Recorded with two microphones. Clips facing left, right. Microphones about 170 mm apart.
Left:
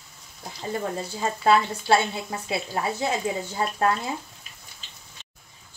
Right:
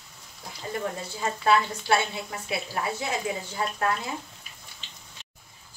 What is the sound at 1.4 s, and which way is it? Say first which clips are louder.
Speech: left 3 dB; 25° left (ahead or behind).